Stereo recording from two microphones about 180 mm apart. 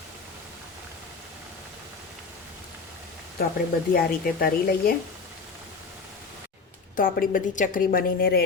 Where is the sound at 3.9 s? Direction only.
55° left (ahead or behind).